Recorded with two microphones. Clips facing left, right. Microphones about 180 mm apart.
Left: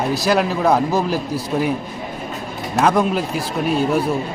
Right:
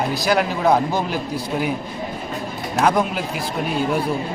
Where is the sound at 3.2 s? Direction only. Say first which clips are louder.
Left 3 dB; 30° left (ahead or behind).